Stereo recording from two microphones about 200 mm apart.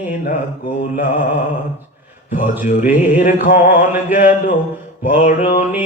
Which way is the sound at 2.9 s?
40° left (ahead or behind).